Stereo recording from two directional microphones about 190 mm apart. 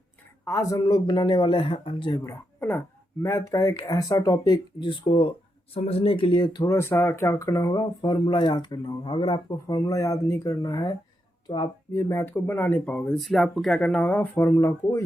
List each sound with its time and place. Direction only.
0.4 s speech: 15° left (ahead or behind)
2.2 s a woman's voice: 15° left (ahead or behind)